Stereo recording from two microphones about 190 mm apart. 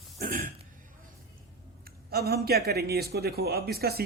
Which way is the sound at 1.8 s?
55° right (ahead or behind).